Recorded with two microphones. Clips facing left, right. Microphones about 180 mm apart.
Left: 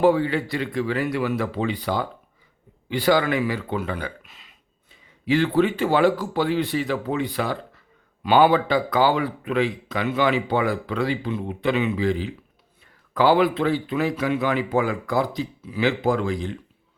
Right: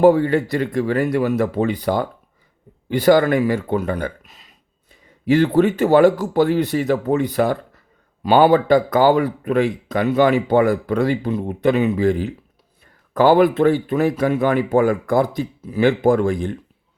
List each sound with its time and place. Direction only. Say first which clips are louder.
0.0 s speech: right 5 dB; 45° right (ahead or behind)